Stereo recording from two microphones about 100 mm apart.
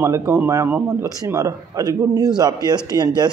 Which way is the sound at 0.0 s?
25° right (ahead or behind).